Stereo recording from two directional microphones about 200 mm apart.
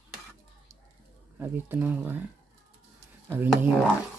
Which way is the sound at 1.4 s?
10° right (ahead or behind).